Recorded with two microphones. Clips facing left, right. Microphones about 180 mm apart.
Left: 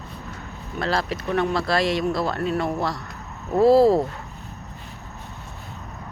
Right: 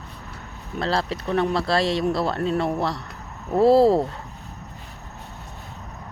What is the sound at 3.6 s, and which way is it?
Speech, 30° right (ahead or behind).